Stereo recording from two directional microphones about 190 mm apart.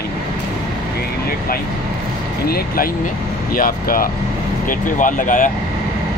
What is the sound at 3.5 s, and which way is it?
Speech, 50° left (ahead or behind).